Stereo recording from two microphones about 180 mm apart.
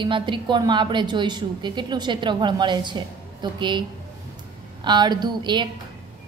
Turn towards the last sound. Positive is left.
turn(degrees=-25)  # may be behind; listen again after turning